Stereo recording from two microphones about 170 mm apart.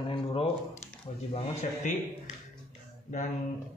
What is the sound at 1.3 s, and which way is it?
Speech, 45° left (ahead or behind).